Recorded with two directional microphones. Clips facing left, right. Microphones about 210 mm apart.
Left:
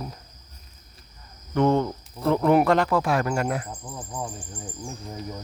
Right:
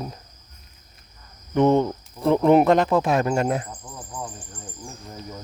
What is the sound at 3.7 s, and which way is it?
Speech, 10° left (ahead or behind).